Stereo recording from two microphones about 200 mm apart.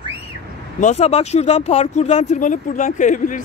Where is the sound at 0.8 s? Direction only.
35° left (ahead or behind).